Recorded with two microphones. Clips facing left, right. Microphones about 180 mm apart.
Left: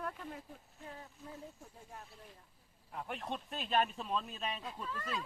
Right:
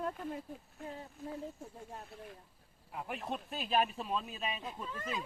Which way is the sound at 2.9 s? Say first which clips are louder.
Right 2 dB; 5° right (ahead or behind).